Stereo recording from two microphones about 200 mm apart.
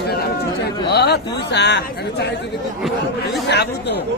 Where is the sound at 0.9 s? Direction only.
55° left (ahead or behind).